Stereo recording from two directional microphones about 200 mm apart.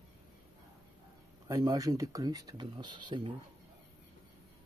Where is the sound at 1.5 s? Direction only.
15° right (ahead or behind).